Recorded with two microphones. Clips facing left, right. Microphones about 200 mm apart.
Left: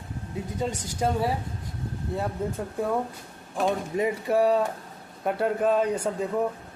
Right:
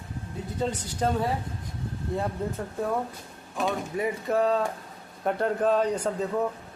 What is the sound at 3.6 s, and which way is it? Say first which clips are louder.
Speech: left 3 dB; 15° left (ahead or behind).